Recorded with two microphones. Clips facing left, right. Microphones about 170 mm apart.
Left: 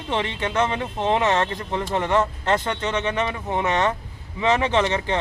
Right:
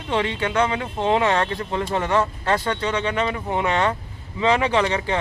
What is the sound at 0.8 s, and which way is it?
Speech, 15° right (ahead or behind).